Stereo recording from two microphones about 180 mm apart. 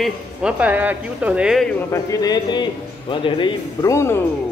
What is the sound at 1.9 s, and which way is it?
Speech, 20° left (ahead or behind).